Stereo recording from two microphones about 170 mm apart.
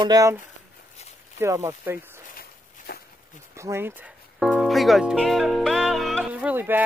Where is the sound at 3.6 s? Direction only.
15° right (ahead or behind).